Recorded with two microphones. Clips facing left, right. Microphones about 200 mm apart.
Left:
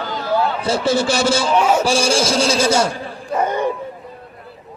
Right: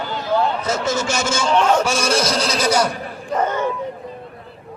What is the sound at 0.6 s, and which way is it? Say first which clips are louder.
Speech: left 4 dB; 30° left (ahead or behind).